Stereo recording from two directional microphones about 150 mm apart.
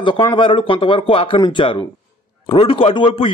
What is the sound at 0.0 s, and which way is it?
A man's voice, 35° left (ahead or behind).